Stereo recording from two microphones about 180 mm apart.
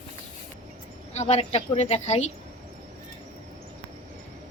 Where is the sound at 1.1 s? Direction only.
35° left (ahead or behind).